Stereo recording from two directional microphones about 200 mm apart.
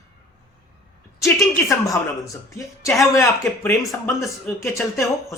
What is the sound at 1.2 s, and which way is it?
A woman's voice, 15° left (ahead or behind).